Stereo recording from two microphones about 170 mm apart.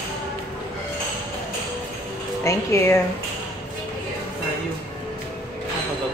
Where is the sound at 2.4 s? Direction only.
15° left (ahead or behind).